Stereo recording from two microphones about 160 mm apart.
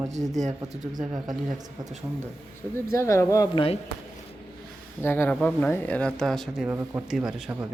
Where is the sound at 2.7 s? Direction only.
15° left (ahead or behind).